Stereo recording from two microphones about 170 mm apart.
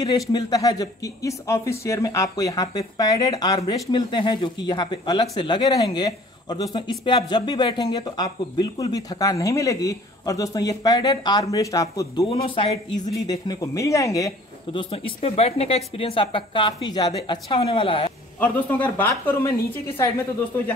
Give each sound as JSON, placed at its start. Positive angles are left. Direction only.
{"t": 0.0, "sound": "speech", "side_deg": 25}
{"t": 12.3, "sound": "speech", "side_deg": 30}
{"t": 14.7, "sound": "speech", "side_deg": 30}
{"t": 18.4, "sound": "speech", "side_deg": 10}